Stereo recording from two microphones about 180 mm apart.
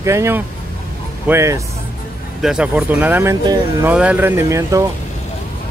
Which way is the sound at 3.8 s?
10° right (ahead or behind).